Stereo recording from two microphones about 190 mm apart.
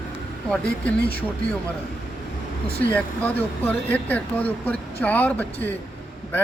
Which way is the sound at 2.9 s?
10° left (ahead or behind).